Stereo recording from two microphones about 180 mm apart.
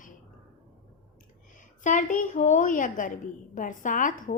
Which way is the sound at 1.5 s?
45° left (ahead or behind).